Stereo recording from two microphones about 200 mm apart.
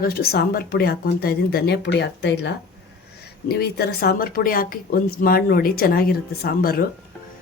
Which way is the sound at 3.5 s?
55° left (ahead or behind).